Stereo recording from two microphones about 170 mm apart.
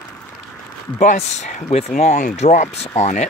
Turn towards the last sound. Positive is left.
turn(degrees=45)  # may be behind; listen again after turning